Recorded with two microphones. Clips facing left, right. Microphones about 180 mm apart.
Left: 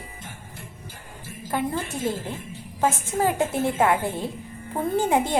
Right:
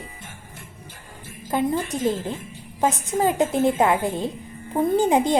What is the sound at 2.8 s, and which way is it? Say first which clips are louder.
A woman's voice: right 2 dB; 20° right (ahead or behind).